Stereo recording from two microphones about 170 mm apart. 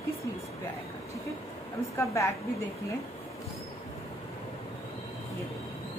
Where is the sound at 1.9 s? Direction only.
15° left (ahead or behind).